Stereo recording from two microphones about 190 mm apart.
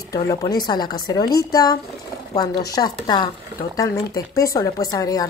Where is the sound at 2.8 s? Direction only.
20° left (ahead or behind).